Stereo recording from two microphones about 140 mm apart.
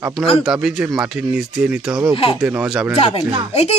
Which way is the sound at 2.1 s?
40° left (ahead or behind).